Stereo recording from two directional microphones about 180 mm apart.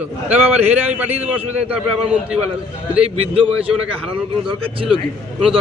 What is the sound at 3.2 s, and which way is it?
A man's voice, 30° right (ahead or behind).